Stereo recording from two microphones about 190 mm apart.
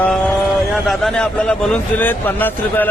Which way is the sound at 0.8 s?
Centre (ahead or behind).